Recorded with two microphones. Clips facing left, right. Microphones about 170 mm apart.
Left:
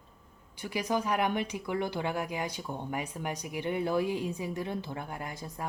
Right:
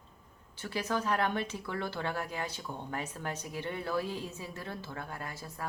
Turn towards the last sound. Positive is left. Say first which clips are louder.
# left 3 dB
turn(degrees=20)  # may be behind; listen again after turning